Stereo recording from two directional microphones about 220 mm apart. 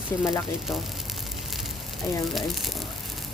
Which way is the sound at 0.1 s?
10° left (ahead or behind).